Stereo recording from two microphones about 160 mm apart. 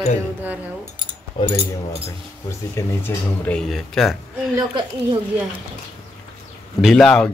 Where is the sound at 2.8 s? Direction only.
10° left (ahead or behind).